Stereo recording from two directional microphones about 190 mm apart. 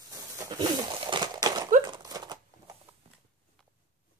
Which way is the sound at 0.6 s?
25° right (ahead or behind).